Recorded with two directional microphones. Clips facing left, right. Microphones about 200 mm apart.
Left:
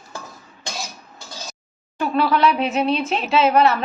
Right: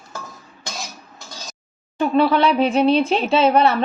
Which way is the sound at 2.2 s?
30° right (ahead or behind).